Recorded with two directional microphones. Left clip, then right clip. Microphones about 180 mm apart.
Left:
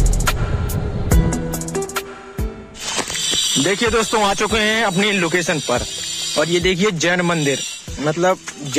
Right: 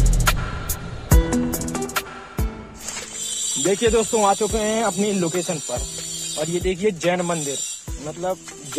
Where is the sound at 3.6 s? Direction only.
10° left (ahead or behind).